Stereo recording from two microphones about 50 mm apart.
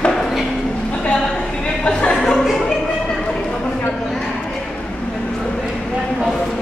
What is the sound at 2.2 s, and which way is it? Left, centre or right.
Chuckle, centre.